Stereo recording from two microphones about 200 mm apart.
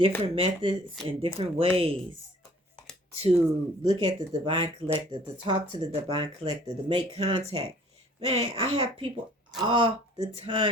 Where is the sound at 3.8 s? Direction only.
30° right (ahead or behind).